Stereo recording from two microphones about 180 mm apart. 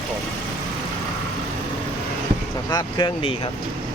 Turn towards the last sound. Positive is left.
turn(degrees=25)  # may be behind; listen again after turning